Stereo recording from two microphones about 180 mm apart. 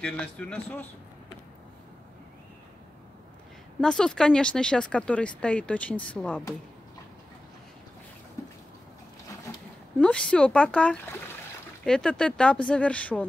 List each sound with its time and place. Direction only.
0.0 s speech: 5° left (ahead or behind)
3.8 s speech: 5° left (ahead or behind)
9.5 s a sound: 15° left (ahead or behind)
9.9 s speech: 5° left (ahead or behind)